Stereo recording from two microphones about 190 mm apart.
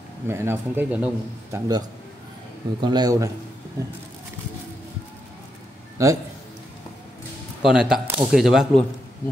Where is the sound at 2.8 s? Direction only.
20° right (ahead or behind).